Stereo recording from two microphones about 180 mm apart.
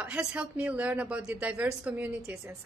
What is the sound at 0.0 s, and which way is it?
A woman's voice, 5° right (ahead or behind).